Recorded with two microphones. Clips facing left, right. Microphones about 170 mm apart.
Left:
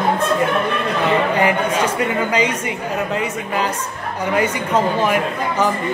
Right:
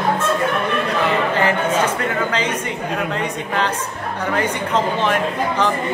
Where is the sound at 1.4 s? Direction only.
10° left (ahead or behind).